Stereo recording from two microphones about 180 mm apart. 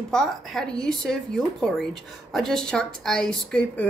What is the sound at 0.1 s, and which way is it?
A woman's voice, centre (ahead or behind).